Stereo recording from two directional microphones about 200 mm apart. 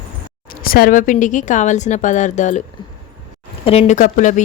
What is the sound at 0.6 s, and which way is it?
Speech, 45° left (ahead or behind).